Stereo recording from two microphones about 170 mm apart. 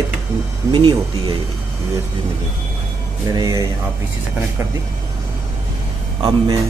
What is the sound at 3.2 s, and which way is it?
Speech, 20° right (ahead or behind).